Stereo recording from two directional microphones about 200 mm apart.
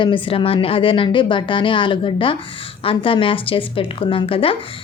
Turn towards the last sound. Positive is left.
turn(degrees=25)  # may be behind; listen again after turning